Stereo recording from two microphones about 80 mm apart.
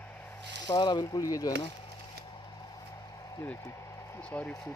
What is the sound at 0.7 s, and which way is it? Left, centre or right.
Speech, left.